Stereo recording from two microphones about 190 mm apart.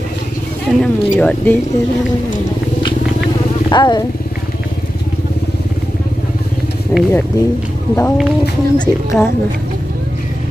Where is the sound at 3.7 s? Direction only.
25° left (ahead or behind).